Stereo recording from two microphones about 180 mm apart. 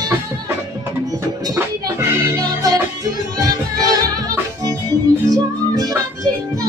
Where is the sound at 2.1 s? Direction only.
15° right (ahead or behind).